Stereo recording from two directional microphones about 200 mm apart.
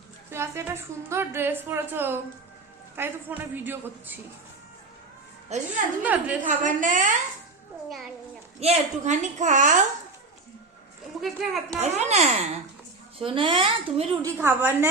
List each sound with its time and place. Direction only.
0.3 s a woman's voice: 15° right (ahead or behind)
5.5 s a woman's voice: 35° right (ahead or behind)
6.0 s a woman's voice: 10° right (ahead or behind)
6.4 s a woman's voice: 40° right (ahead or behind)
8.6 s a woman's voice: 35° right (ahead or behind)
11.2 s a child's voice: centre (ahead or behind)
11.8 s a woman's voice: 35° right (ahead or behind)
14.3 s a woman's voice: 10° right (ahead or behind)